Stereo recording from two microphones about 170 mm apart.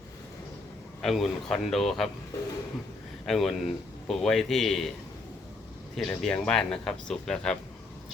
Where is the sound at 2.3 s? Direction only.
20° left (ahead or behind).